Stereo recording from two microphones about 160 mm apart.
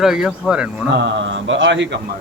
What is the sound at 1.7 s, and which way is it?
Speech, 90° right.